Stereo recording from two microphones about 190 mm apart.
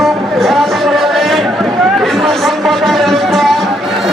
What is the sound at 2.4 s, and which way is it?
Music, centre (ahead or behind).